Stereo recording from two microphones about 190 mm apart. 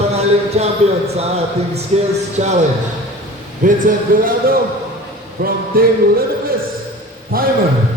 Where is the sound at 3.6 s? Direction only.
50° right (ahead or behind).